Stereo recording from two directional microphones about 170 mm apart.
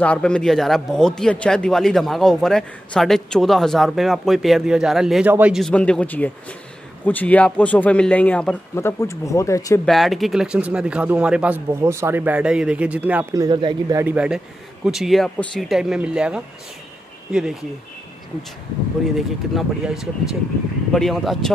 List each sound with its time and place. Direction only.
0.0 s a man's voice: 5° left (ahead or behind); by 5.6 s 10° right (ahead or behind)
5.6 s speech: 5° left (ahead or behind)
9.8 s speech: centre (ahead or behind)
13.3 s speech: 25° right (ahead or behind)
13.9 s a man's voice: 10° right (ahead or behind)
19.1 s a man's voice: centre (ahead or behind)